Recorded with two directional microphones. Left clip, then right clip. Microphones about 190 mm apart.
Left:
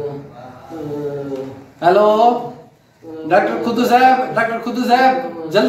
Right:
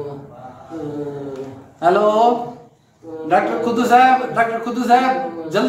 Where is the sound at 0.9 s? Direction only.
15° right (ahead or behind).